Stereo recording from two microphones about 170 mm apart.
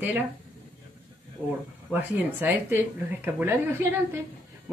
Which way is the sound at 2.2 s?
10° right (ahead or behind).